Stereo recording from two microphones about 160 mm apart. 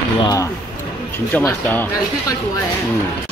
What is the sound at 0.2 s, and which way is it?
Speech, 20° left (ahead or behind).